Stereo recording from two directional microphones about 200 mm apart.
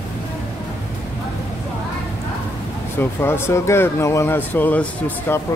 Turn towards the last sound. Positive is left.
turn(degrees=10)  # may be behind; listen again after turning